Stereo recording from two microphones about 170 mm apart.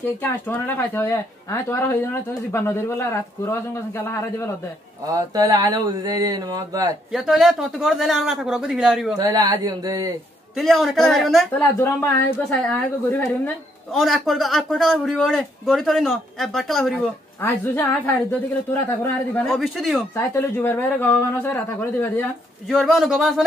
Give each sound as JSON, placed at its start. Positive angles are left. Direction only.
{"t": 0.2, "sound": "speech", "side_deg": 10}
{"t": 5.0, "sound": "speech", "side_deg": -20}
{"t": 7.1, "sound": "a man's voice", "side_deg": 0}
{"t": 9.2, "sound": "speech", "side_deg": -20}
{"t": 10.5, "sound": "a man's voice", "side_deg": 0}
{"t": 11.8, "sound": "speech", "side_deg": 15}
{"t": 13.9, "sound": "a man's voice", "side_deg": 0}
{"t": 19.4, "sound": "a man's voice", "side_deg": 0}
{"t": 20.2, "sound": "speech", "side_deg": 15}
{"t": 22.7, "sound": "a man's voice", "side_deg": 0}